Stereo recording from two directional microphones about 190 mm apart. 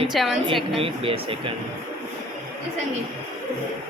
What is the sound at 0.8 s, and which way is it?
Speech, 30° right (ahead or behind).